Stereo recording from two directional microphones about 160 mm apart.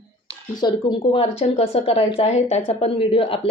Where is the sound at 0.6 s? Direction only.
30° left (ahead or behind).